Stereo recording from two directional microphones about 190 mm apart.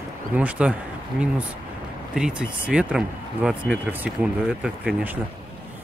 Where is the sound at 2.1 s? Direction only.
5° right (ahead or behind).